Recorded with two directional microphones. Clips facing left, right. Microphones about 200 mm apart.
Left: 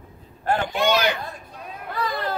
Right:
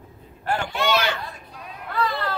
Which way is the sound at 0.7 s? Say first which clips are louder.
Left 1 dB; 15° left (ahead or behind).